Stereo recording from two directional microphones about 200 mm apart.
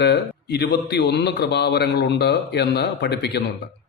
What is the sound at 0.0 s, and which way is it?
A man's voice, 55° left (ahead or behind).